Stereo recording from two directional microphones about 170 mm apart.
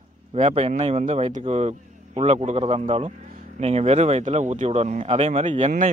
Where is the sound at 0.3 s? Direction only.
40° right (ahead or behind).